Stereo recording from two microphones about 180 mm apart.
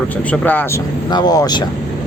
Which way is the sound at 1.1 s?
20° left (ahead or behind).